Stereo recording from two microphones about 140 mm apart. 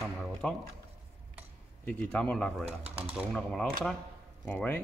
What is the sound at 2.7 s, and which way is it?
Speech, 45° right (ahead or behind).